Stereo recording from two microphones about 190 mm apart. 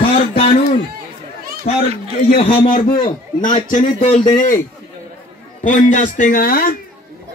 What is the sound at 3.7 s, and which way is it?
Speech, 35° left (ahead or behind).